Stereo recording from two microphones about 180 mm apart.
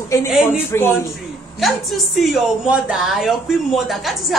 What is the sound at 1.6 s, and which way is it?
A woman's voice, centre (ahead or behind).